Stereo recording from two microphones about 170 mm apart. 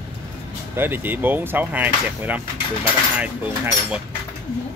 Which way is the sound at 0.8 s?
10° right (ahead or behind).